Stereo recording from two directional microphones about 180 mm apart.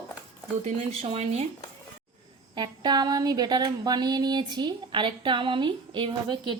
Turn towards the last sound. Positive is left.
turn(degrees=-25)  # may be behind; listen again after turning